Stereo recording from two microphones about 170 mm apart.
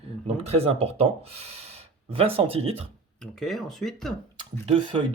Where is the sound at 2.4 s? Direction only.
35° right (ahead or behind).